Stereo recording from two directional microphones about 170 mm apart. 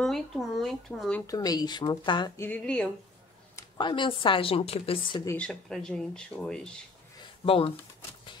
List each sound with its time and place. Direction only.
0.0 s speech: centre (ahead or behind)
1.2 s a woman's voice: 20° left (ahead or behind); by 2.9 s 5° left (ahead or behind)
3.5 s a woman's voice: 25° left (ahead or behind)
5.2 s speech: 15° left (ahead or behind)
5.5 s speech: 5° left (ahead or behind)
7.2 s a sound: 30° left (ahead or behind)